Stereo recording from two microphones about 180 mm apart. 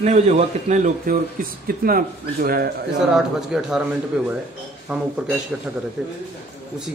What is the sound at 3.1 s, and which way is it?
Speech, centre (ahead or behind).